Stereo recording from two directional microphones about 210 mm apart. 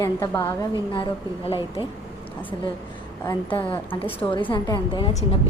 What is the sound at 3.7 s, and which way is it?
Speech, 10° left (ahead or behind).